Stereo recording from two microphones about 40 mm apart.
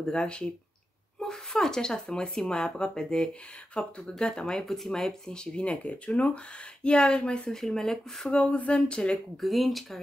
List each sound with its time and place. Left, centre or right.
0.0 s speech: left
7.5 s speech: centre
8.3 s speech: left
9.4 s speech: centre